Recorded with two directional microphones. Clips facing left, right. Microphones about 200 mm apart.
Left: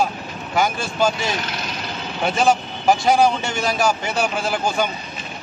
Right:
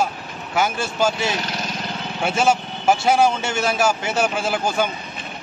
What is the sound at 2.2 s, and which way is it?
A man's voice, 5° right (ahead or behind).